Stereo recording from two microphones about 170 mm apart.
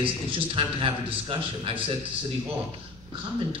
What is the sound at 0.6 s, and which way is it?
A man's voice, 30° right (ahead or behind).